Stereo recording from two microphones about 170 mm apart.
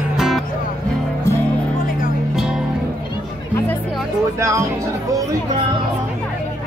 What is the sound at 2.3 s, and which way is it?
Music, centre (ahead or behind).